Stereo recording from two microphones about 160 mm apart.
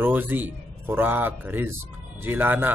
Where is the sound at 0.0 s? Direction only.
10° right (ahead or behind).